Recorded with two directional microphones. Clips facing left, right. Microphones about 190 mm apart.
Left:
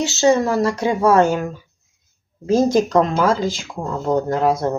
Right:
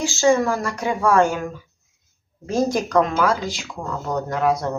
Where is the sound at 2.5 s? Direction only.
20° left (ahead or behind).